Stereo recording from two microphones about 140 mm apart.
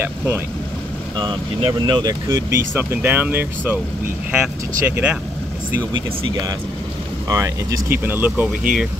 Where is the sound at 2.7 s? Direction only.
15° right (ahead or behind).